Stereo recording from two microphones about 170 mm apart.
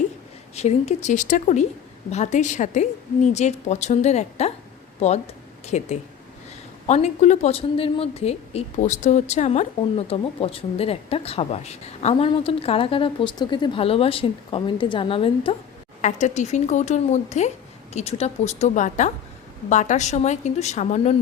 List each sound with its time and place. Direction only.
0.5 s speech: 40° left (ahead or behind)
16.0 s speech: 45° left (ahead or behind)